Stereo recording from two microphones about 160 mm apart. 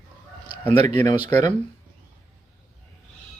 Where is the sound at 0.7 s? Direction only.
40° right (ahead or behind).